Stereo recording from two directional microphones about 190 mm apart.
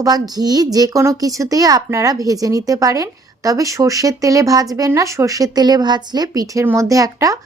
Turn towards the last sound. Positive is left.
turn(degrees=-15)  # may be behind; listen again after turning